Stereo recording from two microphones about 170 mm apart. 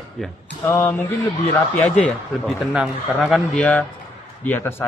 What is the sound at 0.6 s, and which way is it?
A man's voice, 15° left (ahead or behind).